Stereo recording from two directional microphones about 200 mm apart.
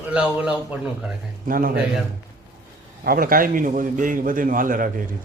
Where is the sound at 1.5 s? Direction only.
45° right (ahead or behind).